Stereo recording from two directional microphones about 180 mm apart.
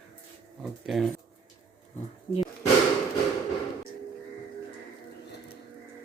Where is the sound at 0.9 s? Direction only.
Centre (ahead or behind).